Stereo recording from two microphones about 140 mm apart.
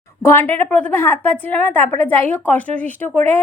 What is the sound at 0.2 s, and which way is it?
A woman's voice, 15° left (ahead or behind).